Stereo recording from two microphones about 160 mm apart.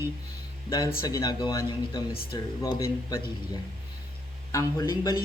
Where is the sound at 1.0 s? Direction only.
25° left (ahead or behind).